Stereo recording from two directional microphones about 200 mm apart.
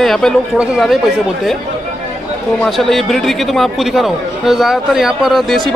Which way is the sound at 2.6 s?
Centre (ahead or behind).